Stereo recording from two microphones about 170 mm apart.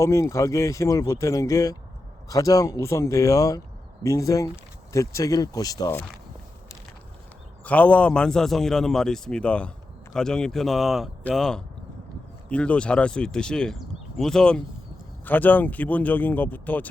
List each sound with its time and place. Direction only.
0.0 s speech: 15° left (ahead or behind)
7.6 s speech: 10° left (ahead or behind)